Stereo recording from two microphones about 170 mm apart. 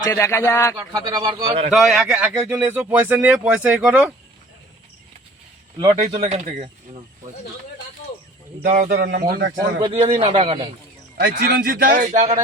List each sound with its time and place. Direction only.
0.0 s a man's voice: 15° left (ahead or behind)
0.8 s speech: 20° right (ahead or behind)
1.5 s speech: 35° right (ahead or behind)
1.7 s speech: 5° right (ahead or behind)
5.8 s speech: 30° right (ahead or behind)
8.6 s a man's voice: 55° right (ahead or behind)
9.0 s speech: 70° right (ahead or behind)
9.8 s speech: 35° right (ahead or behind)
11.2 s a man's voice: 60° right (ahead or behind); by 12.4 s 40° right (ahead or behind)